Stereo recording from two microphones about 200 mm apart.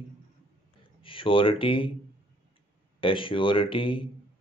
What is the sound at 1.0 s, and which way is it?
Speech, 25° left (ahead or behind).